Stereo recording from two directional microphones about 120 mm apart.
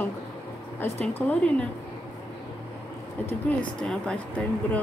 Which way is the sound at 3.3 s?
10° left (ahead or behind).